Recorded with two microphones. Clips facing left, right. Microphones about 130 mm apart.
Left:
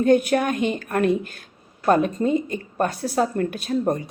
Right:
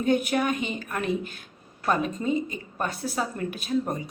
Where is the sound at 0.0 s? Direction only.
45° left (ahead or behind).